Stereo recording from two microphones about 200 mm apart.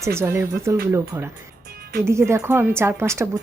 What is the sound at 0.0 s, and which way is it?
Speech, 15° right (ahead or behind).